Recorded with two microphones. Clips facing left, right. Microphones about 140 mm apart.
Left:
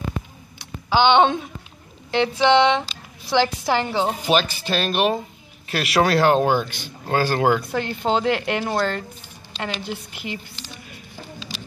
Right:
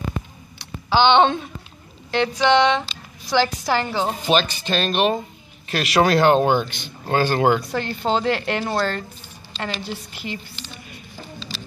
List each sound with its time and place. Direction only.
0.8 s a woman's voice: 10° left (ahead or behind)
4.1 s speech: 10° left (ahead or behind)
7.8 s speech: 15° left (ahead or behind)
11.3 s a sound: 10° left (ahead or behind)